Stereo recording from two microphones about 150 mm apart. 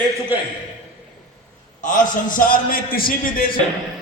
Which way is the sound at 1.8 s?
60° left (ahead or behind).